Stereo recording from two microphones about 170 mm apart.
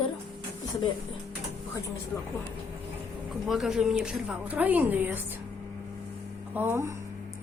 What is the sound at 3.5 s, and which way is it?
A woman's voice, centre (ahead or behind).